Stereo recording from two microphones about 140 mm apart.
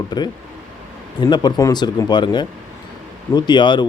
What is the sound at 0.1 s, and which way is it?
A man's voice, 30° left (ahead or behind).